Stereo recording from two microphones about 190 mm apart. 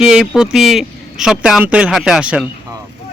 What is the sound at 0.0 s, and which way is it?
A man's voice, 5° right (ahead or behind).